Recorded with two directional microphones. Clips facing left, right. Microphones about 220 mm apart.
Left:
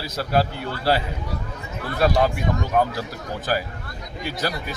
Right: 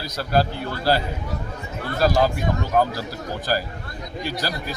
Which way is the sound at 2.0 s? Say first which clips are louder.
Even; centre (ahead or behind).